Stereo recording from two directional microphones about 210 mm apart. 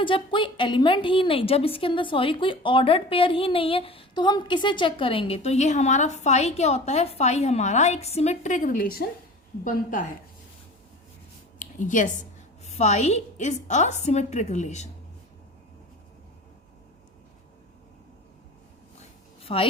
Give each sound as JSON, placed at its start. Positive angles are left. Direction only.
{"t": 0.0, "sound": "a woman's voice", "side_deg": 25}
{"t": 11.6, "sound": "a woman's voice", "side_deg": 40}
{"t": 19.4, "sound": "a sound", "side_deg": 25}